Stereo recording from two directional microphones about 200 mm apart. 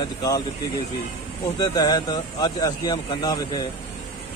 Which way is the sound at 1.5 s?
20° left (ahead or behind).